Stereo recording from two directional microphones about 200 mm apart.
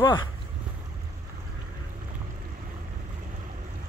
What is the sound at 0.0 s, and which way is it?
Speech, 25° left (ahead or behind).